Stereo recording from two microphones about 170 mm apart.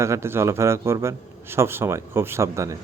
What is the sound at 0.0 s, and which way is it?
A man's voice, 15° right (ahead or behind).